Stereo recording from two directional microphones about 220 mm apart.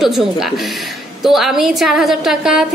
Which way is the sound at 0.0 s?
Centre (ahead or behind).